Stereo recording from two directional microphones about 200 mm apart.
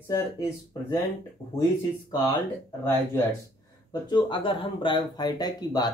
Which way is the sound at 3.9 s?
20° left (ahead or behind).